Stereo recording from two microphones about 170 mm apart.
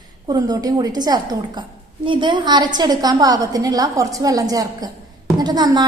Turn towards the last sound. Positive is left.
turn(degrees=-25)  # may be behind; listen again after turning